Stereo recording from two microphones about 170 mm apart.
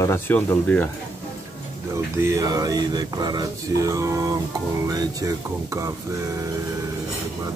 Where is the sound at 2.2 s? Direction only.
20° right (ahead or behind).